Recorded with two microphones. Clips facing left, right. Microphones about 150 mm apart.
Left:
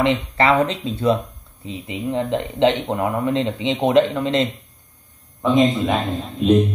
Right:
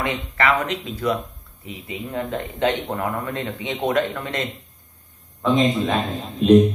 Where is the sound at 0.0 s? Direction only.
25° left (ahead or behind).